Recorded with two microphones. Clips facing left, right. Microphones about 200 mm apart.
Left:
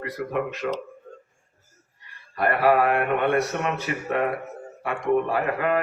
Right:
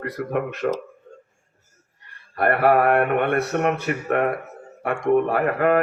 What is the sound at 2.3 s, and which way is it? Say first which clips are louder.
A man's voice: right 2 dB; 55° right (ahead or behind).